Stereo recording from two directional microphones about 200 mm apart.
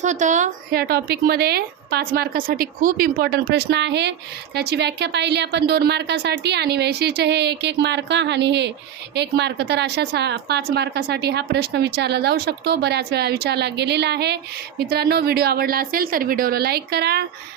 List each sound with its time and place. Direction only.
0.0 s a woman's voice: 35° right (ahead or behind); by 17.2 s 55° right (ahead or behind)